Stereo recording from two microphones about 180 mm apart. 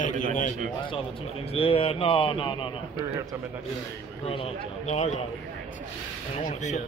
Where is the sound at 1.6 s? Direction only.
30° left (ahead or behind).